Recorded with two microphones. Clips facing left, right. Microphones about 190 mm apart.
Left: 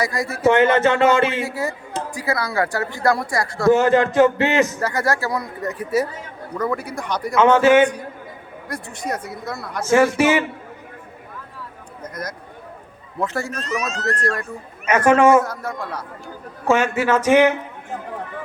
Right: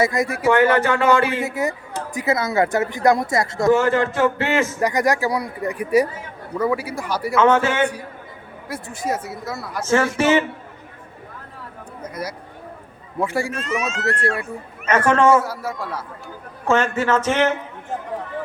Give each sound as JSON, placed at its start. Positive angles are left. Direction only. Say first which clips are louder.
{"t": 0.0, "sound": "speech", "louder": "right 4 dB", "side_deg": -20}
{"t": 0.4, "sound": "speech", "louder": "left 2 dB", "side_deg": 20}
{"t": 1.4, "sound": "speech", "louder": "right 1 dB", "side_deg": -20}
{"t": 3.7, "sound": "a man's voice", "louder": "left 3 dB", "side_deg": 20}
{"t": 4.8, "sound": "speech", "louder": "right 3 dB", "side_deg": -15}
{"t": 8.6, "sound": "speech", "louder": "right 2 dB", "side_deg": -5}
{"t": 9.8, "sound": "a man's voice", "louder": "left 3 dB", "side_deg": 10}
{"t": 12.0, "sound": "speech", "louder": "right 1 dB", "side_deg": -10}
{"t": 13.5, "sound": "speech", "louder": "right 1 dB", "side_deg": 40}
{"t": 14.2, "sound": "speech", "louder": "right 1 dB", "side_deg": -10}
{"t": 14.8, "sound": "a man's voice", "louder": "left 2 dB", "side_deg": 10}
{"t": 15.4, "sound": "speech", "louder": "right 1 dB", "side_deg": -5}
{"t": 16.6, "sound": "a man's voice", "louder": "left 1 dB", "side_deg": 10}